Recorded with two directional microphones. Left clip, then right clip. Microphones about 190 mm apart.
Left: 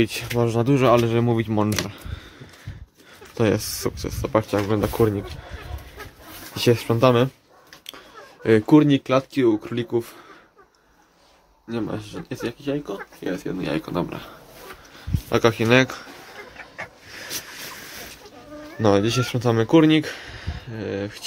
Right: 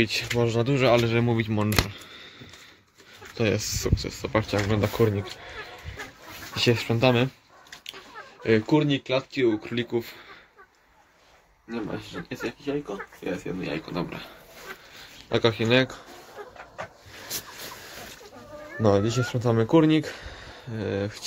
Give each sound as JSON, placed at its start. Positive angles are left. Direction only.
{"t": 0.0, "sound": "speech", "side_deg": 15}
{"t": 3.3, "sound": "speech", "side_deg": 20}
{"t": 6.5, "sound": "speech", "side_deg": 15}
{"t": 7.8, "sound": "a sound", "side_deg": 20}
{"t": 9.4, "sound": "speech", "side_deg": 15}
{"t": 12.1, "sound": "speech", "side_deg": 15}
{"t": 14.0, "sound": "speech", "side_deg": 15}
{"t": 18.8, "sound": "speech", "side_deg": 5}
{"t": 20.7, "sound": "speech", "side_deg": -15}